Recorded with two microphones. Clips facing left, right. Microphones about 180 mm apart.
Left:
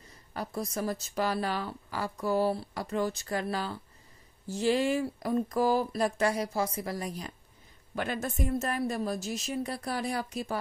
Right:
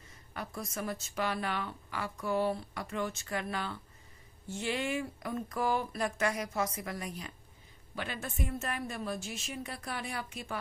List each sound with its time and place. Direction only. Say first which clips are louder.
0.3 s speech: left 6 dB; 35° left (ahead or behind)
7.9 s speech: left 7 dB; 45° left (ahead or behind)